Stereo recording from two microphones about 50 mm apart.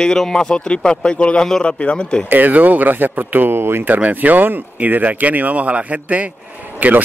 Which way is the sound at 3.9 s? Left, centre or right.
Right.